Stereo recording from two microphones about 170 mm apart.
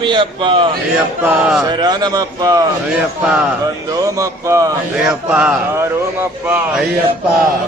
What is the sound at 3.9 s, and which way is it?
Speech, 20° right (ahead or behind).